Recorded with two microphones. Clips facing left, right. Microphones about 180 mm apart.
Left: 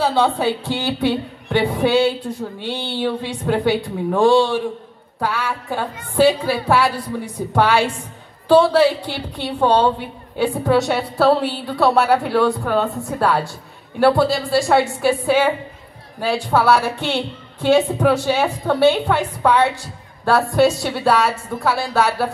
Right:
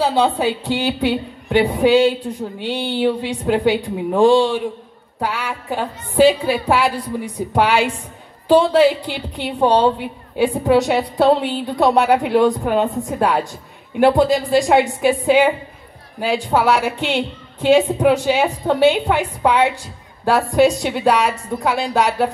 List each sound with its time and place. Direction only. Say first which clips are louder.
0.0 s a woman's voice: right 1 dB; 15° right (ahead or behind)